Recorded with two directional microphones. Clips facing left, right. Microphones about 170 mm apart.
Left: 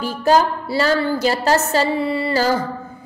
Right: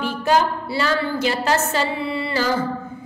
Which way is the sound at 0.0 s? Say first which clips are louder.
Left 3 dB; 40° left (ahead or behind).